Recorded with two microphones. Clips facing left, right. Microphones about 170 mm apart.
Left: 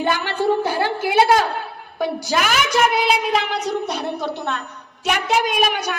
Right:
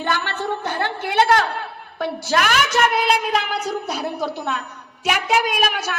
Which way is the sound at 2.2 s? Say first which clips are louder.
Right 3 dB; centre (ahead or behind).